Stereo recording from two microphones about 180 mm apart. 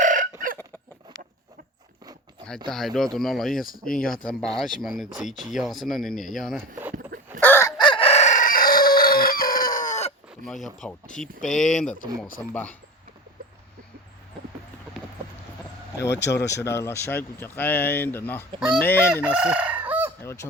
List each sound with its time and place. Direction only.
0.0 s chicken: 45° right (ahead or behind)
2.6 s speech: centre (ahead or behind)
7.4 s chicken: 15° left (ahead or behind)
7.8 s chicken: 30° left (ahead or behind)
10.4 s speech: centre (ahead or behind)
16.2 s speech: 15° left (ahead or behind)
19.2 s crowing: 5° right (ahead or behind)
20.2 s speech: 15° left (ahead or behind)